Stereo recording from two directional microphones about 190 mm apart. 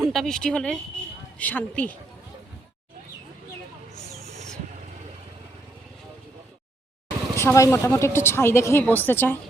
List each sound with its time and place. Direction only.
0.0 s speech: centre (ahead or behind)
7.3 s speech: 15° left (ahead or behind)